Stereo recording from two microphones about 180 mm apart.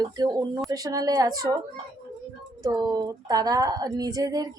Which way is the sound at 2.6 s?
20° right (ahead or behind).